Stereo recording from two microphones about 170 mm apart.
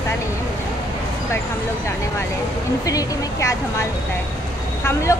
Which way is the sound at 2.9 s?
20° left (ahead or behind).